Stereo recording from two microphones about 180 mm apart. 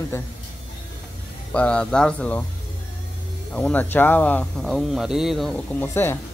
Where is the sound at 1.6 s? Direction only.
5° left (ahead or behind).